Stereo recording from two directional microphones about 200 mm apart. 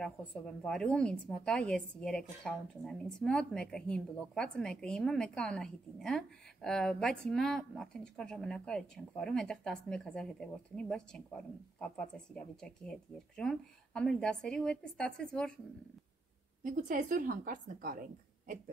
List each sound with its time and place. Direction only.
0.0 s a woman's voice: 5° left (ahead or behind)
16.6 s a woman's voice: 40° right (ahead or behind)